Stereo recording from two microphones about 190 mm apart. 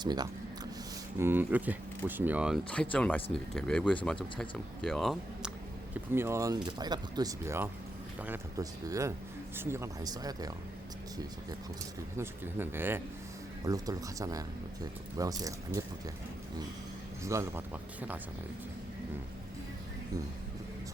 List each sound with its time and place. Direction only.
0.0 s a sound: 20° right (ahead or behind)
1.2 s speech: 10° right (ahead or behind)
2.9 s speech: 10° left (ahead or behind)
6.1 s speech: 15° right (ahead or behind)
12.1 s speech: 10° right (ahead or behind)
17.2 s speech: 15° right (ahead or behind)